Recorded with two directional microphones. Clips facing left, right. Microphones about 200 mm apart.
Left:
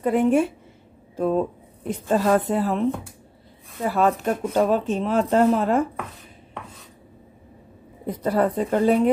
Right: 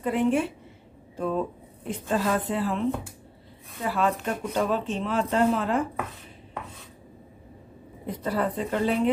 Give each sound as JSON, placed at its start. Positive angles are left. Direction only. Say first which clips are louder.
{"t": 0.0, "sound": "a woman's voice", "louder": "left 5 dB", "side_deg": 45}
{"t": 3.8, "sound": "a woman's voice", "louder": "left 5 dB", "side_deg": 45}
{"t": 8.1, "sound": "a woman's voice", "louder": "left 6 dB", "side_deg": 45}